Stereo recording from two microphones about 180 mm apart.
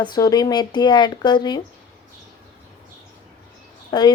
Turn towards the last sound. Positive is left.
turn(degrees=25)  # may be behind; listen again after turning